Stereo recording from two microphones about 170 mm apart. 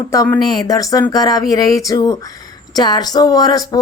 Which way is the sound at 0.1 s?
20° left (ahead or behind).